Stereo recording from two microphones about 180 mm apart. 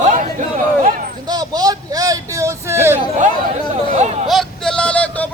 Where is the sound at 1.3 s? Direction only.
20° right (ahead or behind).